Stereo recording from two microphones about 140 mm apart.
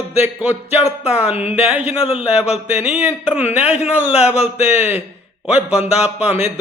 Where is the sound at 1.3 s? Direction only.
45° left (ahead or behind).